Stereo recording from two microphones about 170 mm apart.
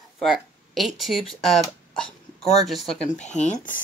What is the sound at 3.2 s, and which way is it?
Speech, 45° left (ahead or behind).